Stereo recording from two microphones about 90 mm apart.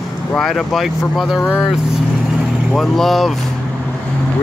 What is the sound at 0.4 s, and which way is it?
Speech, centre (ahead or behind).